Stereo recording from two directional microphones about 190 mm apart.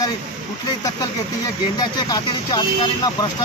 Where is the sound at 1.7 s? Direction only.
20° left (ahead or behind).